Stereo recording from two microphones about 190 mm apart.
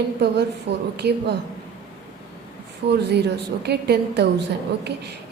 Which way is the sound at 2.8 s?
65° right (ahead or behind).